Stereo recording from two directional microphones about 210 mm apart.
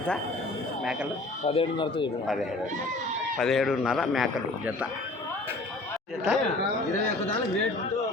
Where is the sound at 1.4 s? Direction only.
25° left (ahead or behind).